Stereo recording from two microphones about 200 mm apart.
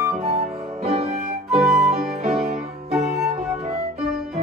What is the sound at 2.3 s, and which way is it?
Music, centre (ahead or behind).